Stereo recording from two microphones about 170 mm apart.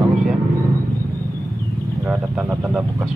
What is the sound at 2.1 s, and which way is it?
Speech, 5° right (ahead or behind).